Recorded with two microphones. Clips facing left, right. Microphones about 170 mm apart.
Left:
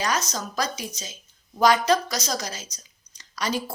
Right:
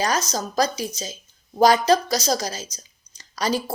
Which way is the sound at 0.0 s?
35° right (ahead or behind).